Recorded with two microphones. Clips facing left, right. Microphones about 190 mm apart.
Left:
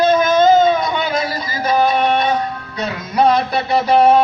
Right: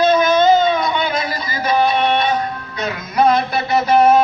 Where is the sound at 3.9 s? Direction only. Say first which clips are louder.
Left 1 dB; 30° left (ahead or behind).